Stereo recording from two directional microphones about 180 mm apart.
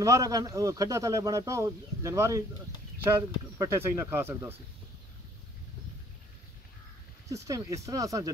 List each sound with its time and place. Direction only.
0.0 s speech: 15° right (ahead or behind)
7.2 s speech: 20° right (ahead or behind)